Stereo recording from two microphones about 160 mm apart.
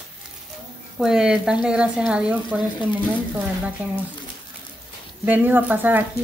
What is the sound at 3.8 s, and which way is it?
Speech, 10° right (ahead or behind).